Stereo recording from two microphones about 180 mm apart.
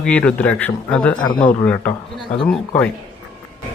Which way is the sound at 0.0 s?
5° left (ahead or behind).